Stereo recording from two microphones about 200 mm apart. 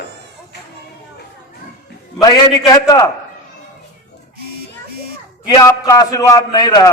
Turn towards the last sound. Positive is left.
turn(degrees=20)  # may be behind; listen again after turning